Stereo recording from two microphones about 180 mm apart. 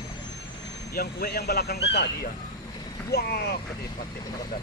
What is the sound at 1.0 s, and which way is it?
Speech, 60° left (ahead or behind).